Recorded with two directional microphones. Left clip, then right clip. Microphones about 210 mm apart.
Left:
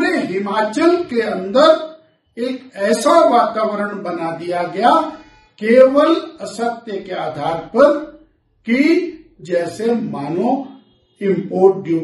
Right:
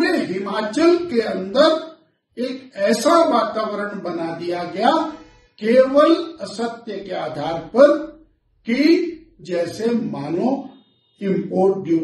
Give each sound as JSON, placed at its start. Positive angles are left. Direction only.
{"t": 0.0, "sound": "a woman's voice", "side_deg": 0}